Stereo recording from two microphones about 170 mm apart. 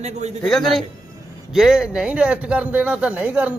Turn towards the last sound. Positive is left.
turn(degrees=-5)  # may be behind; listen again after turning